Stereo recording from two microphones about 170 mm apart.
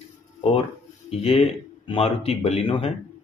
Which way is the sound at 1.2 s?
35° left (ahead or behind).